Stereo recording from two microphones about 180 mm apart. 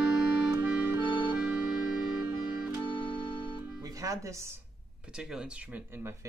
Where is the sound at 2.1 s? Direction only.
10° right (ahead or behind).